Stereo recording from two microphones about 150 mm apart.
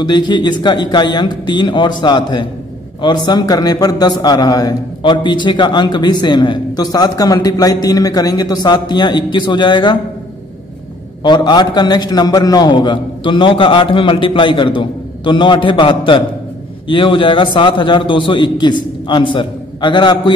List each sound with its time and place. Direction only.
0.0 s a man's voice: 30° left (ahead or behind)
11.2 s a man's voice: 30° left (ahead or behind)